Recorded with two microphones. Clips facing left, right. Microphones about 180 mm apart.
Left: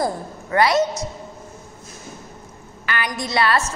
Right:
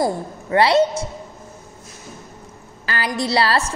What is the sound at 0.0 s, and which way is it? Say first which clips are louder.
A woman's voice: right 3 dB; 25° right (ahead or behind).